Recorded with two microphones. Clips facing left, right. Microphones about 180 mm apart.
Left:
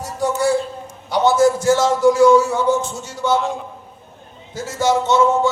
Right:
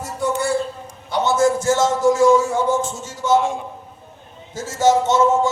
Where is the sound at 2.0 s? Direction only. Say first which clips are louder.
Left 3 dB; 45° right (ahead or behind).